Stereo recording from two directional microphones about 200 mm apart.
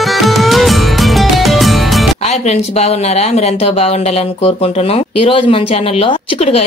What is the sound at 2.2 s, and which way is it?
Speech, 35° left (ahead or behind).